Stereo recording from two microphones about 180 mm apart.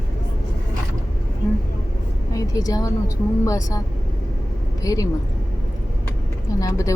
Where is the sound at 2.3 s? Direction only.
20° left (ahead or behind).